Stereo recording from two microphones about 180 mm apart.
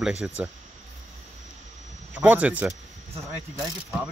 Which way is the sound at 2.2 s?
10° right (ahead or behind).